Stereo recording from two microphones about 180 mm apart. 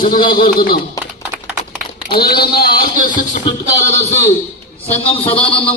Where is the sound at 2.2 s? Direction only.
60° left (ahead or behind).